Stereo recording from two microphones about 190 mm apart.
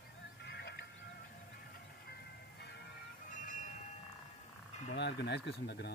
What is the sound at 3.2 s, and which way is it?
Music, 45° left (ahead or behind).